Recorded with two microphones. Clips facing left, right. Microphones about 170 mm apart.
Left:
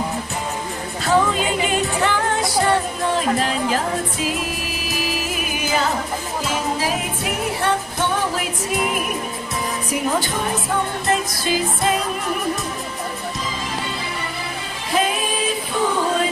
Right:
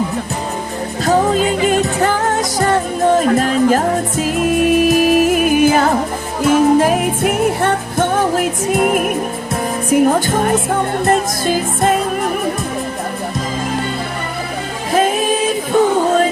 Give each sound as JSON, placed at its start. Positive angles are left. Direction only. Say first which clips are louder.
{"t": 1.0, "sound": "music", "louder": "right 5 dB", "side_deg": -40}
{"t": 14.9, "sound": "choir", "louder": "right 6 dB", "side_deg": -45}